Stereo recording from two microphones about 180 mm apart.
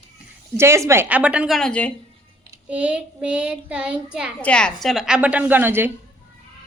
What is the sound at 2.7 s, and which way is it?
Child singing, 5° right (ahead or behind).